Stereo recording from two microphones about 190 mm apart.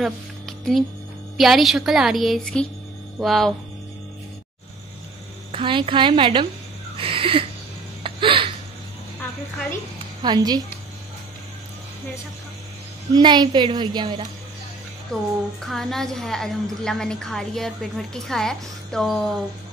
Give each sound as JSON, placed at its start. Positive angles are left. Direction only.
{"t": 0.0, "sound": "a sound", "side_deg": 0}
{"t": 1.3, "sound": "a woman's voice", "side_deg": 0}
{"t": 5.5, "sound": "a woman's voice", "side_deg": -25}
{"t": 8.0, "sound": "a sound", "side_deg": -25}
{"t": 10.2, "sound": "a woman's voice", "side_deg": -20}
{"t": 13.1, "sound": "a woman's voice", "side_deg": -20}
{"t": 15.1, "sound": "a woman's voice", "side_deg": 5}